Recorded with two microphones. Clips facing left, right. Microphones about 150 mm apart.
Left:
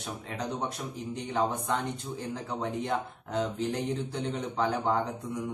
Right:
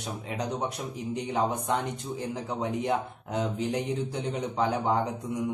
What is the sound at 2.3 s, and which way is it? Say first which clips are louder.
Speech: right 1 dB; 15° right (ahead or behind).